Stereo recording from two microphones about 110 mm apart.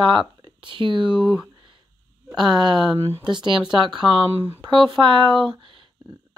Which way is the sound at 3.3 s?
45° right (ahead or behind).